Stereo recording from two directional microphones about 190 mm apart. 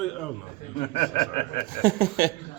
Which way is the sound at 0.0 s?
Centre (ahead or behind).